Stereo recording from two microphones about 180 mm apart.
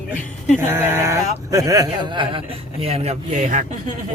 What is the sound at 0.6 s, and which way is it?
Speech, 15° right (ahead or behind).